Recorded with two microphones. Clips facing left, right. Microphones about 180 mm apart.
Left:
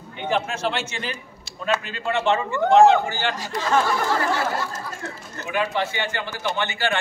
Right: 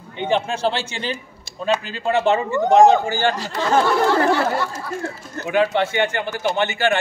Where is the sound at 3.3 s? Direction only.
65° right (ahead or behind).